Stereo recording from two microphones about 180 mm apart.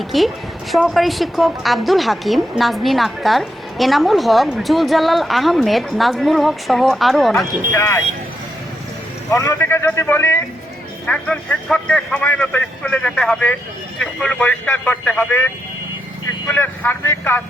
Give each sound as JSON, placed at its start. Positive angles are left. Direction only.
{"t": 0.1, "sound": "a woman's voice", "side_deg": 0}
{"t": 7.7, "sound": "speech", "side_deg": 15}
{"t": 9.3, "sound": "a woman's voice", "side_deg": 15}
{"t": 16.5, "sound": "speech", "side_deg": 10}